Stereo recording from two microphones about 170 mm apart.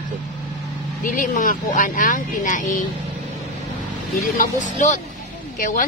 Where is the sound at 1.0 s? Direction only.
50° left (ahead or behind).